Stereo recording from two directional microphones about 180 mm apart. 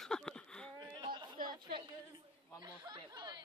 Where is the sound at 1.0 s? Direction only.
25° right (ahead or behind).